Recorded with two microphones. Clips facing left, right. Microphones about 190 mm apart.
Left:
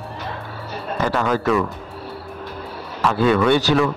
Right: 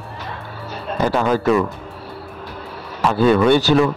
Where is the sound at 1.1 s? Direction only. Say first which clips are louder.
Right 3 dB; 25° right (ahead or behind).